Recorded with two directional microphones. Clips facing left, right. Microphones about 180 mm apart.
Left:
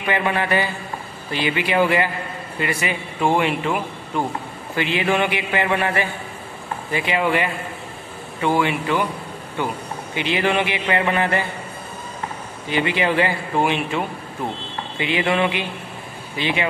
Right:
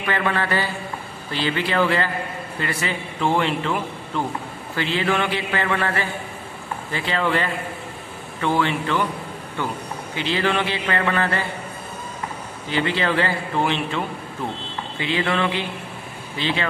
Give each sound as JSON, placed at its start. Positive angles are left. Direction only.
{"t": 0.0, "sound": "a man's voice", "side_deg": 15}
{"t": 12.6, "sound": "a man's voice", "side_deg": 15}